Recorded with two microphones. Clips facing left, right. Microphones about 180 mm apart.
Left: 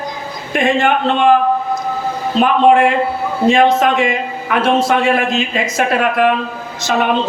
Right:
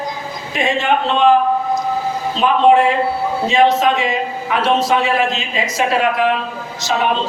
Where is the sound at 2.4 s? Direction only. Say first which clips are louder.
Left 1 dB; 55° left (ahead or behind).